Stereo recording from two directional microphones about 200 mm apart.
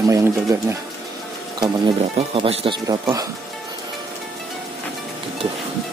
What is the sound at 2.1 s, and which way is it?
Speech, 30° right (ahead or behind).